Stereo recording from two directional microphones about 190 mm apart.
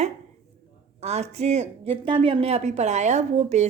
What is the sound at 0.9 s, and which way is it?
A woman's voice, 35° right (ahead or behind).